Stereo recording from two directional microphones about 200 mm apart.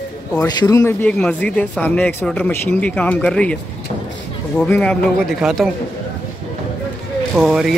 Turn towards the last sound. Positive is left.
turn(degrees=0)  # may be behind; listen again after turning